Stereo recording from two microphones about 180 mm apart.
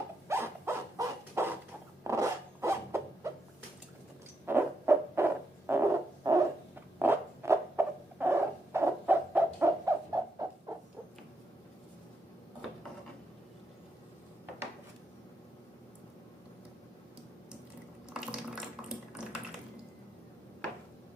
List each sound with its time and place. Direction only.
0.3 s dog: 15° right (ahead or behind)
2.0 s zipper: 15° right (ahead or behind)
4.4 s owl: 15° right (ahead or behind)
18.1 s a sound: 5° right (ahead or behind)